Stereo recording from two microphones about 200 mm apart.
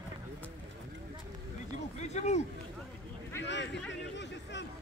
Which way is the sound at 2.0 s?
35° left (ahead or behind).